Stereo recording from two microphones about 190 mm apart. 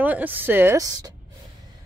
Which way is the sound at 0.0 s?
10° right (ahead or behind).